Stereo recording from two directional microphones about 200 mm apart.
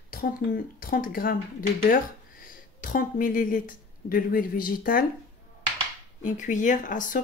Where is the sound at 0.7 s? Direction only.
45° left (ahead or behind).